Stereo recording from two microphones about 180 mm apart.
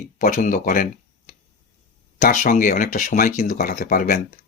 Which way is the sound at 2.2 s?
50° left (ahead or behind).